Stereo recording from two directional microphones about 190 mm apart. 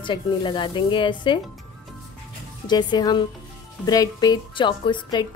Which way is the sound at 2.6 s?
20° left (ahead or behind).